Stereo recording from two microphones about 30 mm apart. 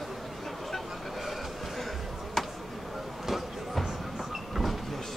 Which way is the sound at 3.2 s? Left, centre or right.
Centre.